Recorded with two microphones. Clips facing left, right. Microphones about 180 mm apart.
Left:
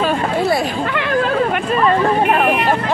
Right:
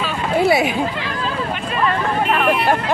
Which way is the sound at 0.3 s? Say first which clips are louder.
Right 4 dB; 5° right (ahead or behind).